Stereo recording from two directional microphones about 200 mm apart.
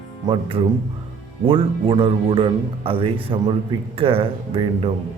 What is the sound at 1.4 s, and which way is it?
Speech, 25° right (ahead or behind).